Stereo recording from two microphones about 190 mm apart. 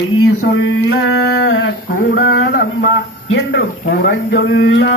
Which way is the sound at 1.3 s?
80° left.